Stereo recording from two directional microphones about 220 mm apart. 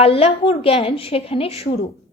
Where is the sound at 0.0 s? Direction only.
25° left (ahead or behind).